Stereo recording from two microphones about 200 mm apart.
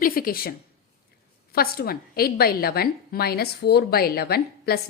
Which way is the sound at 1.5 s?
50° left (ahead or behind).